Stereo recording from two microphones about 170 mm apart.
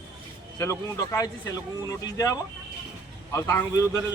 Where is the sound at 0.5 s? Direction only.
20° left (ahead or behind).